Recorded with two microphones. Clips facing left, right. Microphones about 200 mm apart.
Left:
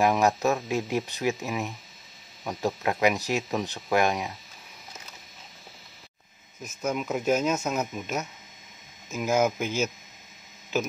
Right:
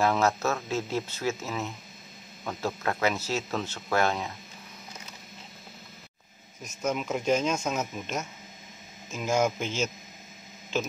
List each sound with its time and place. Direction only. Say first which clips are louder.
0.0 s speech: left 2 dB; 15° left (ahead or behind)
6.6 s speech: left 1 dB; centre (ahead or behind)
9.1 s speech: left 2 dB; 5° left (ahead or behind)